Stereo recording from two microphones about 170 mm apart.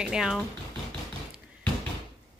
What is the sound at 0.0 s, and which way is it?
Speech, 5° right (ahead or behind).